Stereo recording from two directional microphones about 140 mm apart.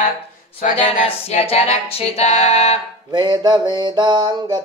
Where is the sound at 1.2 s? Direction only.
45° left (ahead or behind).